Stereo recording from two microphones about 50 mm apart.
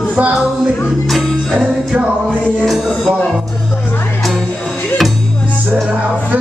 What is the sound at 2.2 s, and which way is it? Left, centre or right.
Music, centre.